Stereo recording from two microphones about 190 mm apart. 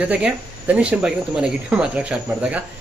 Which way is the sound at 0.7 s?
5° right (ahead or behind).